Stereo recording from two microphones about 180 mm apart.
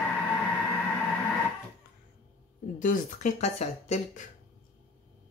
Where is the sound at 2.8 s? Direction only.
45° left (ahead or behind).